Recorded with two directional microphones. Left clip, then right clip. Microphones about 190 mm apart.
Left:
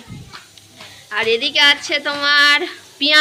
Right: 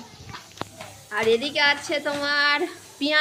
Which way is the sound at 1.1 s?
Centre (ahead or behind).